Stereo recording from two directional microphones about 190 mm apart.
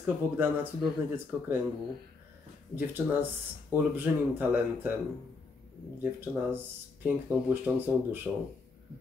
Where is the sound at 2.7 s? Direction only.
10° right (ahead or behind).